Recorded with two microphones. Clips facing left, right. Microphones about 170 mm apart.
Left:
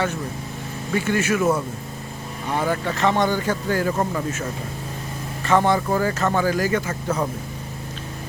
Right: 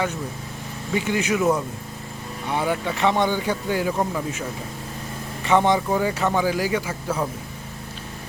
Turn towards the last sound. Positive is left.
turn(degrees=-10)  # may be behind; listen again after turning